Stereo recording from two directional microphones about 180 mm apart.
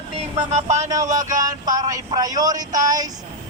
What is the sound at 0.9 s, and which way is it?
Speech, 20° right (ahead or behind).